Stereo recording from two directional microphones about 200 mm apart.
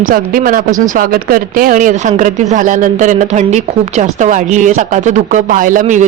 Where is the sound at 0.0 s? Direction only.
45° right (ahead or behind).